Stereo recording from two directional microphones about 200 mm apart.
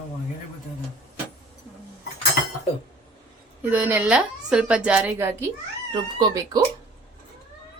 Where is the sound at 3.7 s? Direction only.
10° right (ahead or behind).